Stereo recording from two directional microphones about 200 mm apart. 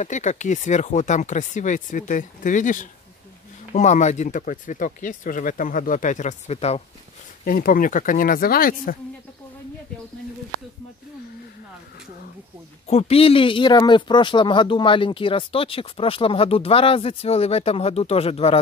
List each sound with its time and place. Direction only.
0.0 s speech: 35° left (ahead or behind)
7.4 s speech: 45° left (ahead or behind)
12.8 s speech: 30° left (ahead or behind)